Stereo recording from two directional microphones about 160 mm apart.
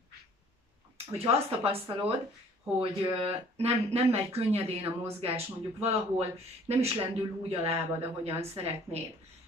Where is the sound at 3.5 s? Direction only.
40° right (ahead or behind).